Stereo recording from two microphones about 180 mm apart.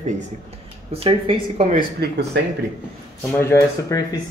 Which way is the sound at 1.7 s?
65° right (ahead or behind).